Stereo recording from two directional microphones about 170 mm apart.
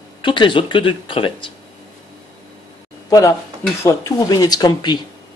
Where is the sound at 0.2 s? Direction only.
30° left (ahead or behind).